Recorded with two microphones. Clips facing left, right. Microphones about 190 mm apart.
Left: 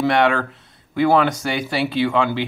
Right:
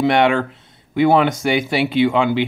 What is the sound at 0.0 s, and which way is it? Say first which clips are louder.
Speech: right 2 dB; 20° right (ahead or behind).